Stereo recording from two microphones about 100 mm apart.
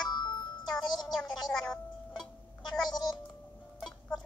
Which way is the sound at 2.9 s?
45° left (ahead or behind).